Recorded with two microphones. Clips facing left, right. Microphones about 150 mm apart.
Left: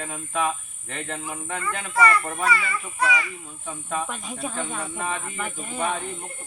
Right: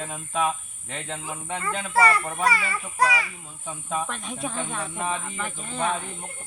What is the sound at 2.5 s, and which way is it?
Speech, 40° right (ahead or behind).